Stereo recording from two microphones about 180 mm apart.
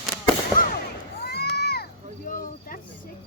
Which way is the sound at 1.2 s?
60° left (ahead or behind).